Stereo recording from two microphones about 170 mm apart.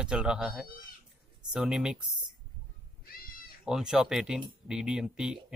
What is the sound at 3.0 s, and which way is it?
Goat, 60° left (ahead or behind).